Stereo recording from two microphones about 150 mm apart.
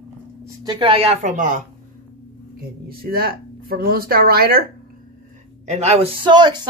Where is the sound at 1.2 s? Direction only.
55° right (ahead or behind).